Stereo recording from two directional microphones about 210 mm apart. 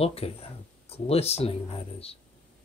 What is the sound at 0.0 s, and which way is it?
Speech, 30° left (ahead or behind).